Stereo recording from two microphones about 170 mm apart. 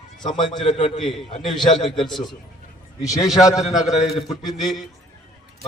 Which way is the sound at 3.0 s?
20° left (ahead or behind).